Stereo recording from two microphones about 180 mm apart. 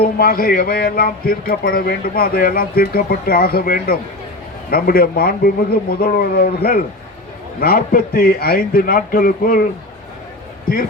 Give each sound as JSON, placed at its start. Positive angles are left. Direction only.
{"t": 0.0, "sound": "a man's voice", "side_deg": 55}